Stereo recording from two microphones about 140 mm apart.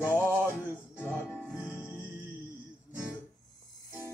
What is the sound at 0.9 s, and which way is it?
Music, 15° left (ahead or behind).